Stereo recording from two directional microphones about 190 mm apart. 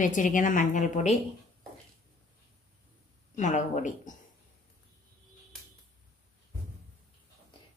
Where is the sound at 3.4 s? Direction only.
40° left (ahead or behind).